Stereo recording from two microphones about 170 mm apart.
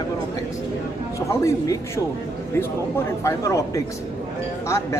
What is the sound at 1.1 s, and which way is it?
Speech, 20° left (ahead or behind).